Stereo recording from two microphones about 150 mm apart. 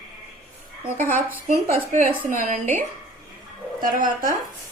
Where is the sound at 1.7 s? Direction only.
70° right (ahead or behind).